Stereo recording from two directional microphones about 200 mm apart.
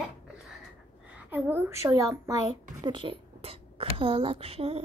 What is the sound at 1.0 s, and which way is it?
A woman's voice, 10° right (ahead or behind).